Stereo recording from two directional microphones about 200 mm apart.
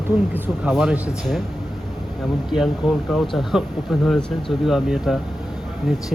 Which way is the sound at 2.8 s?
Centre (ahead or behind).